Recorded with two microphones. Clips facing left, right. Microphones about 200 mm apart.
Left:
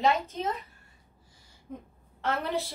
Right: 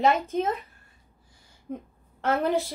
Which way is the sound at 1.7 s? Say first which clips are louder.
Right 6 dB; 70° right (ahead or behind).